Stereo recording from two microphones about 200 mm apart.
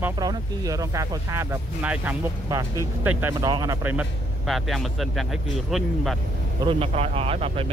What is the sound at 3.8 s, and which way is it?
Speech, 5° right (ahead or behind).